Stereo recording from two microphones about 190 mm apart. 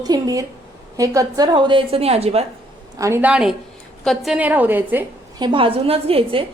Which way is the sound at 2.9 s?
15° right (ahead or behind).